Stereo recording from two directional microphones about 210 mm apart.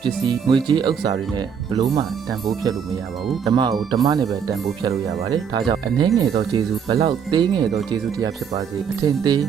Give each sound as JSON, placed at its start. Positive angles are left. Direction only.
{"t": 0.0, "sound": "speech", "side_deg": -20}
{"t": 3.5, "sound": "speech", "side_deg": -20}